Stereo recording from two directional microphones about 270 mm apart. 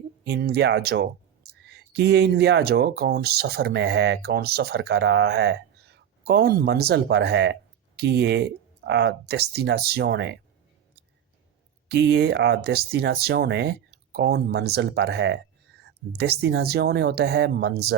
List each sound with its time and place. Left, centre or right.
0.3 s speech: right
11.9 s speech: right